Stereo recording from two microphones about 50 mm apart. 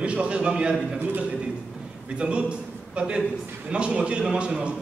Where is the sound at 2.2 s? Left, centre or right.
Right.